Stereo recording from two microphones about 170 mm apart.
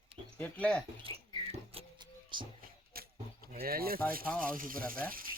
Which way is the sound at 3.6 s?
60° right (ahead or behind).